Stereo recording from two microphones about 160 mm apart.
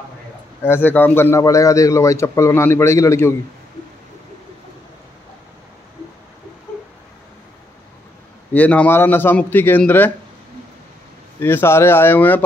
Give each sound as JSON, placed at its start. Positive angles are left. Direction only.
{"t": 0.6, "sound": "a man's voice", "side_deg": 15}
{"t": 8.5, "sound": "a man's voice", "side_deg": 10}
{"t": 11.3, "sound": "a man's voice", "side_deg": 15}